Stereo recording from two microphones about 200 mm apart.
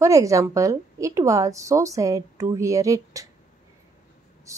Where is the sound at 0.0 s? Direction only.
15° right (ahead or behind).